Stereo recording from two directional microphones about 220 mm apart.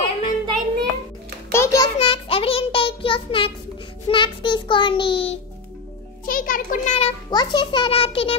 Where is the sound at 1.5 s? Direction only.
15° left (ahead or behind).